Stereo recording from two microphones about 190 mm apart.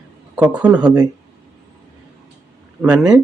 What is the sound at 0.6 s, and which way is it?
Speech, 5° right (ahead or behind).